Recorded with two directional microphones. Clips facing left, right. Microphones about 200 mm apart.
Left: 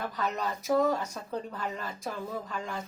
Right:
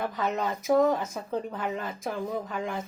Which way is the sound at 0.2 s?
20° right (ahead or behind).